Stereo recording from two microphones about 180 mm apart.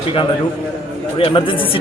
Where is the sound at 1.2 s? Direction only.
30° left (ahead or behind).